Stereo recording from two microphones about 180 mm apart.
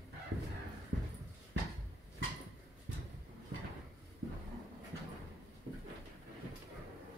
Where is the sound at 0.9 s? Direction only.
75° right (ahead or behind).